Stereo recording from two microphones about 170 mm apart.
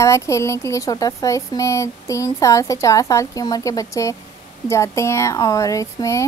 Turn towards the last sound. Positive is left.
turn(degrees=20)  # may be behind; listen again after turning